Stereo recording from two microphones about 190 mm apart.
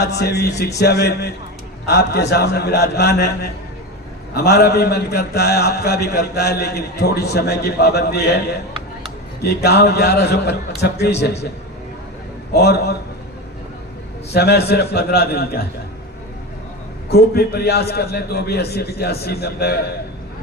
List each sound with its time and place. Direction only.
0.0 s a man's voice: 60° left (ahead or behind)
12.5 s a man's voice: 55° left (ahead or behind)
14.3 s a man's voice: 60° left (ahead or behind)
17.1 s a man's voice: 55° left (ahead or behind)